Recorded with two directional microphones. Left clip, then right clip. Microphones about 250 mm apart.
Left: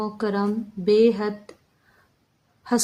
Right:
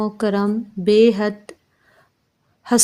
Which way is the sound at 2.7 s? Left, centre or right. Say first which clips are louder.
Right 5 dB; right.